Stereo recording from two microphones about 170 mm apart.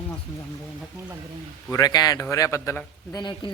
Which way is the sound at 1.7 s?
25° left (ahead or behind).